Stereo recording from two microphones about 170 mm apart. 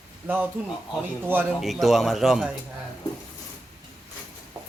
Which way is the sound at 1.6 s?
Centre (ahead or behind).